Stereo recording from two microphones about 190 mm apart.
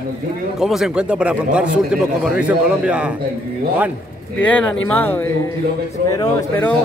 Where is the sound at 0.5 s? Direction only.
Centre (ahead or behind).